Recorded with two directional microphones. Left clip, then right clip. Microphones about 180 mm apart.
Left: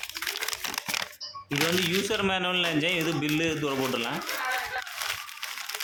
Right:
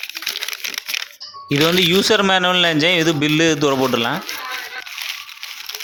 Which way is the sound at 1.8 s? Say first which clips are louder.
Right 12 dB; 35° right (ahead or behind).